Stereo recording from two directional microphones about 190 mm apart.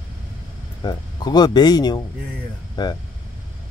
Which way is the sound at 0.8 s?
20° left (ahead or behind).